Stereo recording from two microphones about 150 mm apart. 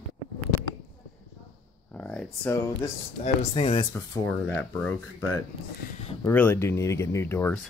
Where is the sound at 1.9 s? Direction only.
5° left (ahead or behind).